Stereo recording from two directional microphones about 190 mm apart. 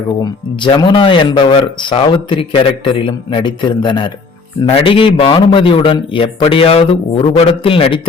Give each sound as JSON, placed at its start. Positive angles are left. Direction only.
{"t": 0.2, "sound": "speech", "side_deg": 25}